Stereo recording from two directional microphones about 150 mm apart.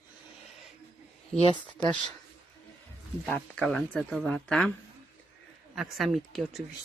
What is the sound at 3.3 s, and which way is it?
Speech, 5° left (ahead or behind).